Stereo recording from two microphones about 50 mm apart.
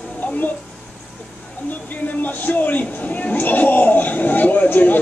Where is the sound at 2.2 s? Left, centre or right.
Left.